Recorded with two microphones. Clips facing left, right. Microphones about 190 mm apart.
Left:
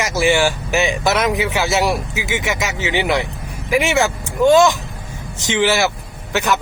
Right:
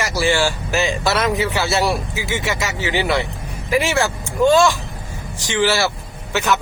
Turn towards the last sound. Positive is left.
turn(degrees=15)  # may be behind; listen again after turning